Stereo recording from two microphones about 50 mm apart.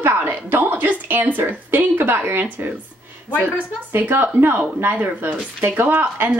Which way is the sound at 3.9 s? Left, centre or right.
Right.